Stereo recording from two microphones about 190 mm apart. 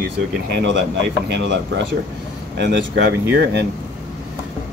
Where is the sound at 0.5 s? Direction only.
65° right (ahead or behind).